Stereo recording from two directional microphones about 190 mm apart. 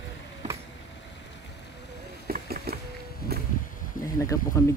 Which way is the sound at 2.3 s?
55° right (ahead or behind).